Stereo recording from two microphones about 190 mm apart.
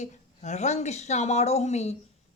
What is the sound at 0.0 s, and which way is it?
Speech, 35° left (ahead or behind).